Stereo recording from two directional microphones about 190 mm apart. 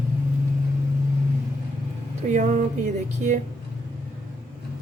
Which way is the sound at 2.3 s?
40° right (ahead or behind).